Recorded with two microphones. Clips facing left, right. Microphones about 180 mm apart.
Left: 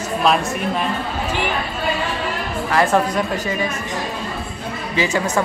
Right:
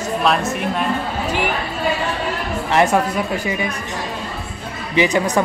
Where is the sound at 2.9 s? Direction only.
10° right (ahead or behind).